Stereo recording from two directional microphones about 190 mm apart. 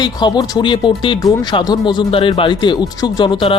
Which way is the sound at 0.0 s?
20° left (ahead or behind).